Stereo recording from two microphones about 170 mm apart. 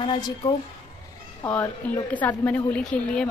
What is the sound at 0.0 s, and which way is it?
Speech, 30° left (ahead or behind).